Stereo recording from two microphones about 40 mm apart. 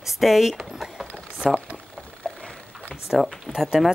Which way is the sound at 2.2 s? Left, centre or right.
Left.